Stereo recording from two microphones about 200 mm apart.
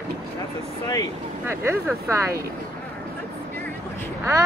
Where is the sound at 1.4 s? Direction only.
10° right (ahead or behind).